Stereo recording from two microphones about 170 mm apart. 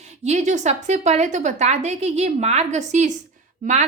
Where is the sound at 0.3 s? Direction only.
45° right (ahead or behind).